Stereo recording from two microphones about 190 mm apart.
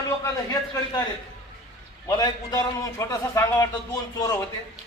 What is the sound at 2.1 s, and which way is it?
A man's voice, 20° left (ahead or behind).